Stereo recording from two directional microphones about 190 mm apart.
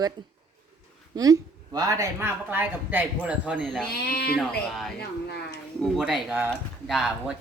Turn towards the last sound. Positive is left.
turn(degrees=0)  # may be behind; listen again after turning